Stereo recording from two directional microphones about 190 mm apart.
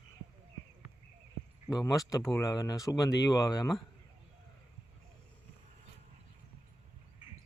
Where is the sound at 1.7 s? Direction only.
20° left (ahead or behind).